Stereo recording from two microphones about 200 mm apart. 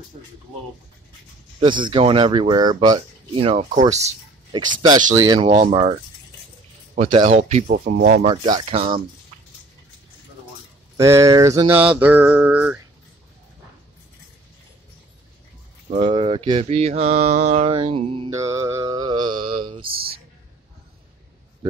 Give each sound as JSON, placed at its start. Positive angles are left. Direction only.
{"t": 1.6, "sound": "mantra", "side_deg": -25}
{"t": 4.8, "sound": "mantra", "side_deg": -20}
{"t": 7.0, "sound": "mantra", "side_deg": -25}
{"t": 7.2, "sound": "speech", "side_deg": -35}
{"t": 8.3, "sound": "mantra", "side_deg": -25}
{"t": 11.0, "sound": "a sound", "side_deg": -15}
{"t": 15.9, "sound": "mantra", "side_deg": -25}
{"t": 18.4, "sound": "mantra", "side_deg": -15}